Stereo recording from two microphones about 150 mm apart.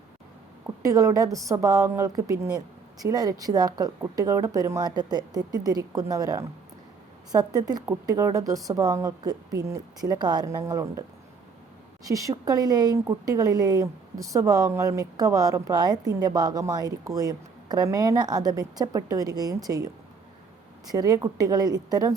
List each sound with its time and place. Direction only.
0.9 s a woman's voice: 20° right (ahead or behind)
12.0 s a woman's voice: 25° right (ahead or behind)